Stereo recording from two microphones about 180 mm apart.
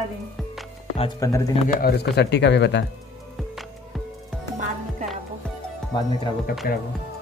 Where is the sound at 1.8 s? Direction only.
65° left (ahead or behind).